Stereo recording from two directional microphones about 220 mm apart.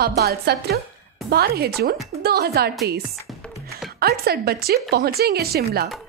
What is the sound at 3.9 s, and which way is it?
A woman's voice, 45° right (ahead or behind).